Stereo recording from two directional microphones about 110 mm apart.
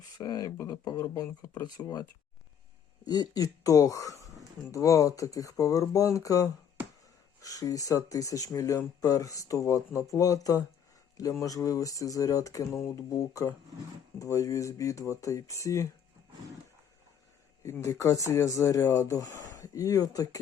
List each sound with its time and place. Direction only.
0.0 s speech: 35° left (ahead or behind)
17.6 s speech: 25° left (ahead or behind)